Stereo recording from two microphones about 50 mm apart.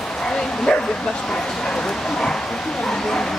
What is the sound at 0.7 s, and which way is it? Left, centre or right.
Bow-wow, centre.